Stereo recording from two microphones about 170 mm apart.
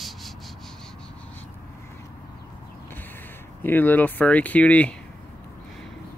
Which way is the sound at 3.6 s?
10° left (ahead or behind).